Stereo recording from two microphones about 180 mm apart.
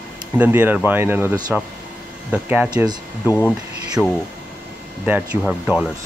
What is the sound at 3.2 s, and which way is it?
Speech, 15° left (ahead or behind).